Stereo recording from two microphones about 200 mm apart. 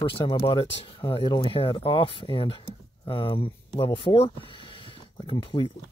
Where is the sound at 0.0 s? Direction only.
25° left (ahead or behind).